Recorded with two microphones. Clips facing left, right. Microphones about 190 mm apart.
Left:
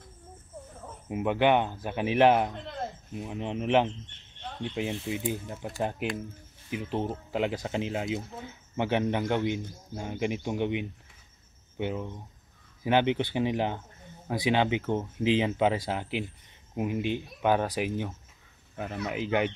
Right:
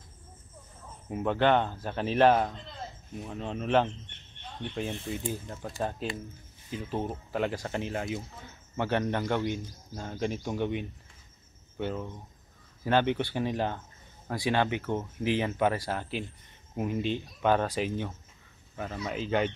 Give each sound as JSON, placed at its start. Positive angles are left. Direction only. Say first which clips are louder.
{"t": 1.0, "sound": "speech", "louder": "left 1 dB", "side_deg": 10}
{"t": 2.5, "sound": "a sound", "louder": "left 6 dB", "side_deg": 60}
{"t": 3.2, "sound": "speech", "louder": "left 2 dB", "side_deg": 15}